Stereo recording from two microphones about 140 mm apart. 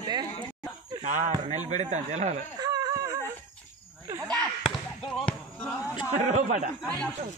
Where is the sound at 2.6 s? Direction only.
25° right (ahead or behind).